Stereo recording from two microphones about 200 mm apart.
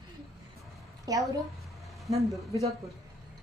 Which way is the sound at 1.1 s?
20° right (ahead or behind).